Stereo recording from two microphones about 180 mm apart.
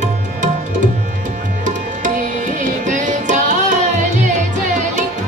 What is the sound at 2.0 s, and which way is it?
Music, 45° right (ahead or behind).